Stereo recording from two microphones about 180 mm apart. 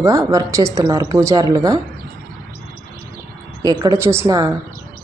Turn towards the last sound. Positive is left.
turn(degrees=-20)  # may be behind; listen again after turning